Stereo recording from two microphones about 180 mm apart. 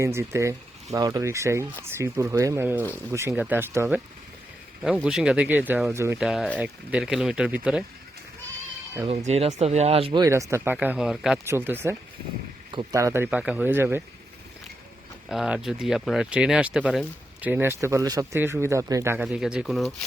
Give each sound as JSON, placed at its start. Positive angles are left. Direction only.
{"t": 0.0, "sound": "speech", "side_deg": -15}
{"t": 6.1, "sound": "speech", "side_deg": 0}
{"t": 9.0, "sound": "speech", "side_deg": -40}
{"t": 10.2, "sound": "speech", "side_deg": -15}
{"t": 15.3, "sound": "speech", "side_deg": -5}